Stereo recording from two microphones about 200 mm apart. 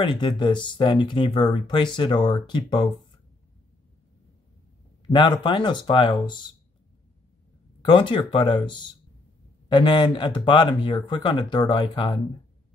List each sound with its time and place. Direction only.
0.0 s speech: 25° left (ahead or behind)
5.0 s speech: 25° left (ahead or behind)
7.8 s speech: 25° left (ahead or behind)